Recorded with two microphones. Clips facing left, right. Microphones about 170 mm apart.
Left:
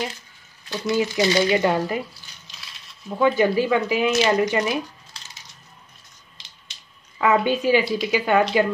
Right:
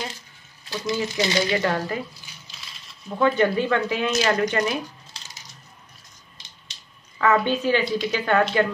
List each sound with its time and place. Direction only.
0.7 s speech: 30° left (ahead or behind)
3.2 s speech: 5° left (ahead or behind)
7.2 s speech: 10° left (ahead or behind)